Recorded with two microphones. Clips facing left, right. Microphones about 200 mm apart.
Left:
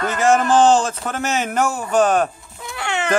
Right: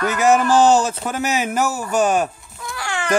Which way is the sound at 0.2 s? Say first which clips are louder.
Even; 10° right (ahead or behind).